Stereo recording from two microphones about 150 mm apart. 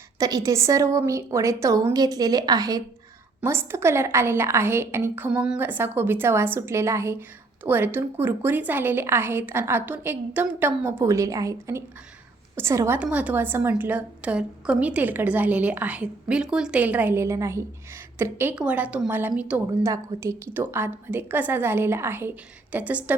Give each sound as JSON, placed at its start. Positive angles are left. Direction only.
{"t": 0.2, "sound": "a woman's voice", "side_deg": -25}